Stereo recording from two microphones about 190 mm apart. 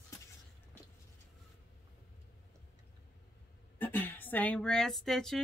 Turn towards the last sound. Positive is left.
turn(degrees=0)  # may be behind; listen again after turning